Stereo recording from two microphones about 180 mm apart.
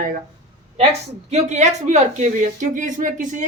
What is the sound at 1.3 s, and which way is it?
A woman's voice, 40° right (ahead or behind).